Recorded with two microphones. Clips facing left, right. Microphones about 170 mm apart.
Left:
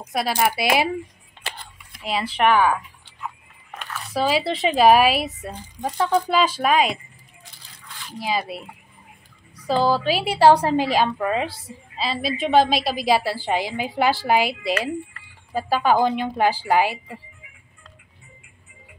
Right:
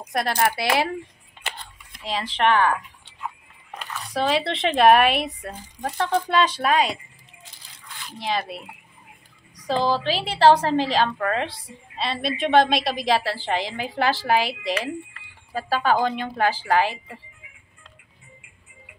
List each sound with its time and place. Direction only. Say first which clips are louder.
0.1 s a woman's voice: left 1 dB; 5° left (ahead or behind)
2.0 s a woman's voice: left 2 dB; 10° left (ahead or behind)
4.1 s a woman's voice: left 1 dB; 5° left (ahead or behind)
8.2 s a woman's voice: left 1 dB; 5° left (ahead or behind)